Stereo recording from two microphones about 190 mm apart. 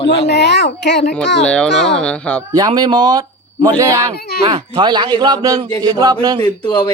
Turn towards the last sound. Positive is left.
turn(degrees=25)  # may be behind; listen again after turning